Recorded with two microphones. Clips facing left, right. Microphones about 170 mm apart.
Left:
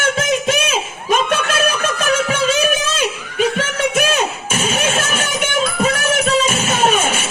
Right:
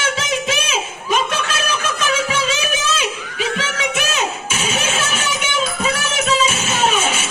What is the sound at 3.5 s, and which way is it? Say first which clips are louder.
Music: left 4 dB; 50° left (ahead or behind).